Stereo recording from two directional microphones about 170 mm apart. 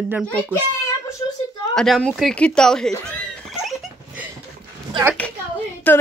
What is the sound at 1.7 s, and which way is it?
Speech, centre (ahead or behind).